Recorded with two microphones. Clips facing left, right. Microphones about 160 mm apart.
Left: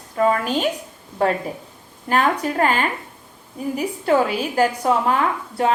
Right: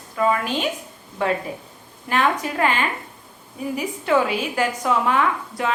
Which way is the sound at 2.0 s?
40° left (ahead or behind).